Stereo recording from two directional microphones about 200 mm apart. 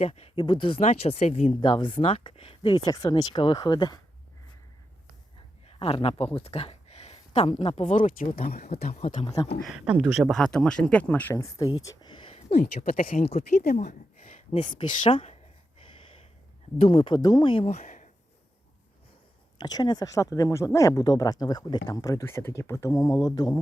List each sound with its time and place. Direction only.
0.0 s speech: 30° left (ahead or behind)
5.6 s speech: 30° left (ahead or behind)
8.4 s speech: 45° left (ahead or behind)
8.9 s speech: 35° left (ahead or behind)
9.6 s speech: 5° right (ahead or behind); by 11.7 s 15° left (ahead or behind)
11.8 s a sound: 20° left (ahead or behind)
12.5 s speech: 45° left (ahead or behind)
14.5 s speech: 25° left (ahead or behind)
16.8 s speech: 25° left (ahead or behind)
19.5 s speech: 20° left (ahead or behind)